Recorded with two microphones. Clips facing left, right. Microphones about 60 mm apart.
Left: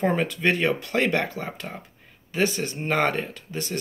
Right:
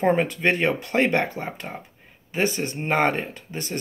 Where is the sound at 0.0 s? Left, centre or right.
Right.